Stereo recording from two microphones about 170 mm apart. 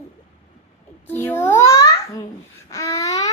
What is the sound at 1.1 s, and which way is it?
Babbling, 10° left (ahead or behind).